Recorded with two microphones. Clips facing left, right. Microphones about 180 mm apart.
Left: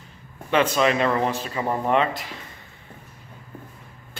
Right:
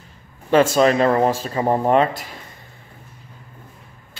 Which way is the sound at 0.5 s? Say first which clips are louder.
Right 5 dB; 40° right (ahead or behind).